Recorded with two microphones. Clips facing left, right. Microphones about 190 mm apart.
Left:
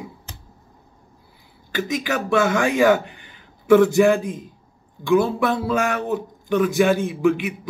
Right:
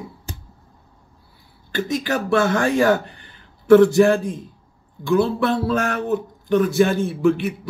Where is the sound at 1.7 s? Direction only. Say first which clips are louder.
Right 1 dB; 15° left (ahead or behind).